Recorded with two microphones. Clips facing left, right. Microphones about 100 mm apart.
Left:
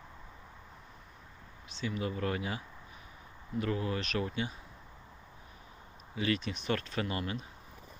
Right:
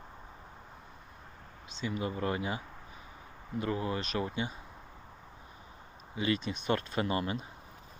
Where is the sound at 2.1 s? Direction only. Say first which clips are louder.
Right 1 dB; 20° right (ahead or behind).